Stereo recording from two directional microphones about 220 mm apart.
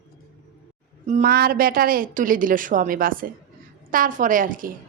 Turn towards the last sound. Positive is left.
turn(degrees=-40)  # may be behind; listen again after turning